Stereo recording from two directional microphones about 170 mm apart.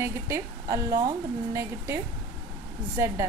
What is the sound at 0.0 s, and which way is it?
A woman's voice, 15° right (ahead or behind).